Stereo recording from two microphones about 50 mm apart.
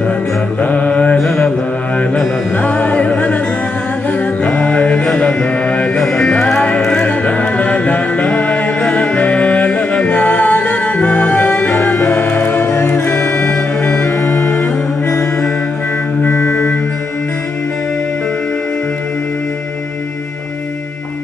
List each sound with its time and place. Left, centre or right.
0.6 s mantra: left
2.5 s music: left
4.1 s mantra: left
6.2 s music: centre
7.1 s music: left
11.7 s music: left
12.6 s music: left
13.7 s music: left
14.2 s music: left
16.3 s organ: left